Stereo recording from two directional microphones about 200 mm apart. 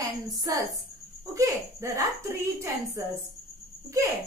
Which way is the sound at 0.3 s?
15° right (ahead or behind).